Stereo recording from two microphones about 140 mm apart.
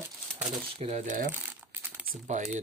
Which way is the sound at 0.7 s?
50° right (ahead or behind).